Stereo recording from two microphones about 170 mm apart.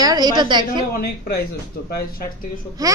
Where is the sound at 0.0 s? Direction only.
25° right (ahead or behind).